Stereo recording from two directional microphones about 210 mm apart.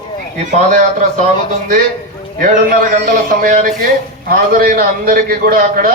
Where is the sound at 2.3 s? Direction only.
40° right (ahead or behind).